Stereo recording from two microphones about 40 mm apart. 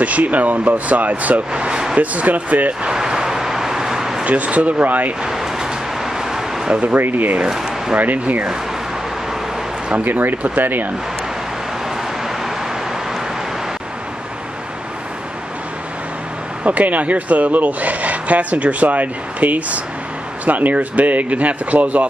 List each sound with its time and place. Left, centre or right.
0.0 s speech: right
1.5 s speech: right
2.0 s speech: right
2.8 s vehicle: centre
4.2 s speech: right
5.2 s vehicle: centre
6.7 s speech: right
7.0 s speech: right
9.9 s speech: right
16.6 s speech: right